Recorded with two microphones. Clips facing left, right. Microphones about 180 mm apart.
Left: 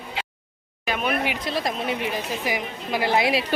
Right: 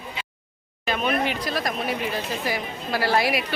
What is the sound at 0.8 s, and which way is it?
Speech, 10° left (ahead or behind).